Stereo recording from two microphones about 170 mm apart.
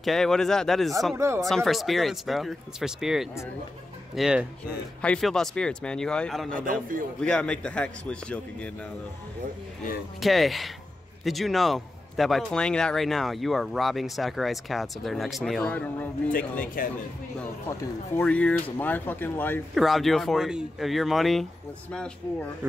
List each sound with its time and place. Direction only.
0.0 s a man's voice: centre (ahead or behind)
1.1 s speech: 15° right (ahead or behind)
1.4 s a man's voice: centre (ahead or behind)
6.5 s a man's voice: 55° right (ahead or behind)
7.2 s a man's voice: 5° left (ahead or behind)
10.2 s a man's voice: centre (ahead or behind)
16.8 s speech: 55° left (ahead or behind)
17.6 s speech: 10° left (ahead or behind)
19.7 s a man's voice: centre (ahead or behind)